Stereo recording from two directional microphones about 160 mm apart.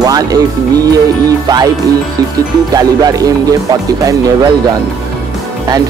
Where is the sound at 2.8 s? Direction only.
25° right (ahead or behind).